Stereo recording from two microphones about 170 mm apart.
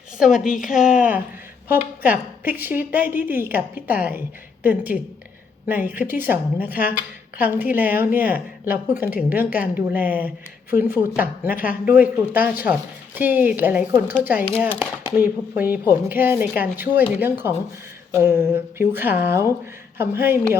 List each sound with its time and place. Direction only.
0.2 s a woman's voice: 5° right (ahead or behind)
0.4 s a woman's voice: 50° left (ahead or behind)
0.8 s a woman's voice: 5° right (ahead or behind)
18.1 s a woman's voice: 15° right (ahead or behind)